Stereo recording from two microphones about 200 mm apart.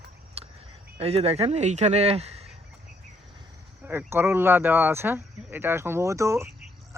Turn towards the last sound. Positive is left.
turn(degrees=-15)  # may be behind; listen again after turning